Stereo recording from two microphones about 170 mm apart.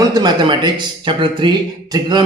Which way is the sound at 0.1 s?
25° right (ahead or behind).